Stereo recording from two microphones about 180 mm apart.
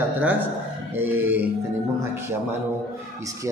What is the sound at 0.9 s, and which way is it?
Speech, 10° right (ahead or behind).